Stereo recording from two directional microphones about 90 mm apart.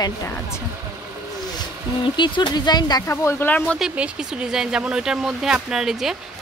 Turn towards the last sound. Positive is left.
turn(degrees=-5)  # may be behind; listen again after turning